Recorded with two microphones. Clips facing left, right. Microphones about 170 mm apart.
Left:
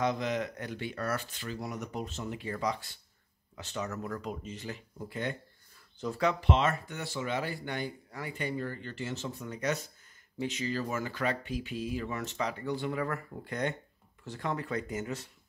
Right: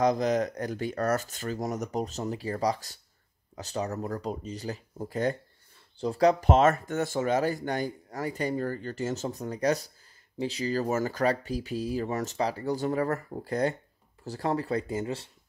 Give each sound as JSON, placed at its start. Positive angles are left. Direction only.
{"t": 0.0, "sound": "speech", "side_deg": -40}